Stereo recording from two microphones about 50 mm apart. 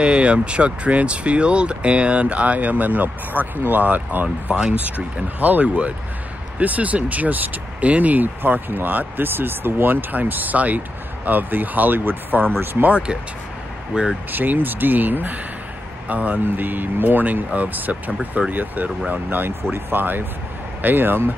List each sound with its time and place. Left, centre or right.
0.0 s speech: right
13.9 s speech: centre
14.3 s speech: right